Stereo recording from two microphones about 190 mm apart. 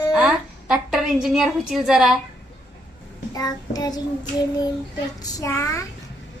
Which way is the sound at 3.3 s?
20° left (ahead or behind).